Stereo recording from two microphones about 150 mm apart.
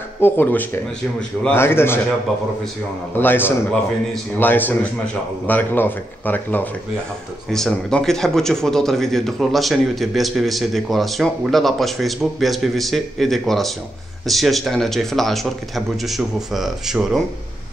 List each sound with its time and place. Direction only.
0.2 s speech: 15° left (ahead or behind)
3.2 s a man's voice: 15° left (ahead or behind); by 17.2 s centre (ahead or behind)